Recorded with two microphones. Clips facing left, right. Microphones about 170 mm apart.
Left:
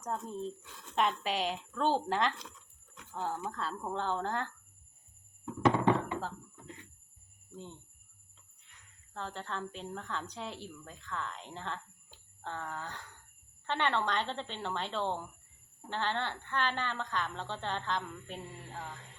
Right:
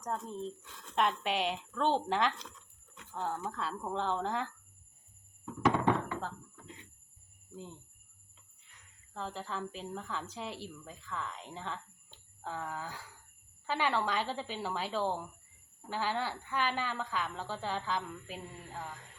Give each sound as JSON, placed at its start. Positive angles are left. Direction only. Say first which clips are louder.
{"t": 0.0, "sound": "a woman's voice", "louder": "even", "side_deg": 0}
{"t": 7.5, "sound": "speech", "louder": "even", "side_deg": -5}
{"t": 9.1, "sound": "a woman's voice", "louder": "right 1 dB", "side_deg": -5}